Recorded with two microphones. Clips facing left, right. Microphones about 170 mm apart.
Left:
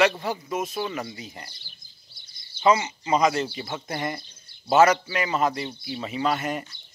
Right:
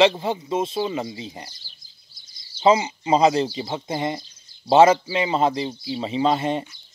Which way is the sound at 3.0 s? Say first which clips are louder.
Right 4 dB; 30° right (ahead or behind).